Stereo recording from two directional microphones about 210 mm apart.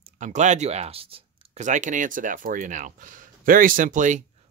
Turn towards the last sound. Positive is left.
turn(degrees=-35)  # may be behind; listen again after turning